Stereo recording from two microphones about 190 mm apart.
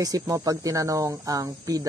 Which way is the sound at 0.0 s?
20° right (ahead or behind).